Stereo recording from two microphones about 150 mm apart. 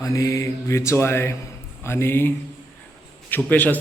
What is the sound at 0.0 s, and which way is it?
Mantra, 20° left (ahead or behind).